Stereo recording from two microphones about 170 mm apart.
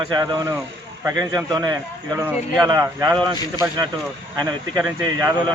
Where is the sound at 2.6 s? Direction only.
20° right (ahead or behind).